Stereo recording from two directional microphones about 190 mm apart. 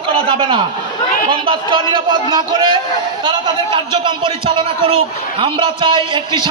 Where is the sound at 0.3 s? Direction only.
25° right (ahead or behind).